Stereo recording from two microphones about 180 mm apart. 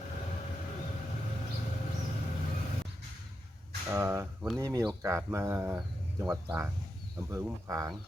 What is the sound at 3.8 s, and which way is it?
Speech, 10° right (ahead or behind).